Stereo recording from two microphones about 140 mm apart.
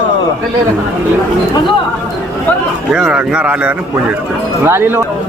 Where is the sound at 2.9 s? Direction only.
5° right (ahead or behind).